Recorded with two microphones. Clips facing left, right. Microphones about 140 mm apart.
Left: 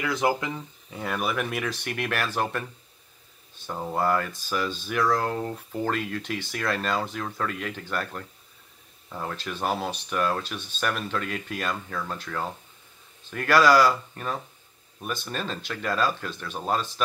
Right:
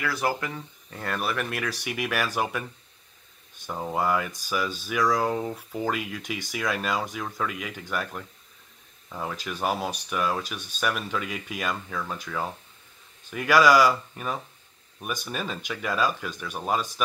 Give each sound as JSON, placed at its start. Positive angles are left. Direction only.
{"t": 0.0, "sound": "speech", "side_deg": 20}
{"t": 0.8, "sound": "speech", "side_deg": 5}
{"t": 1.7, "sound": "speech", "side_deg": -10}
{"t": 3.6, "sound": "speech", "side_deg": -10}